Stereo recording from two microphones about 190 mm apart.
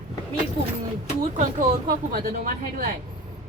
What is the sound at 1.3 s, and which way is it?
Speech, 40° right (ahead or behind).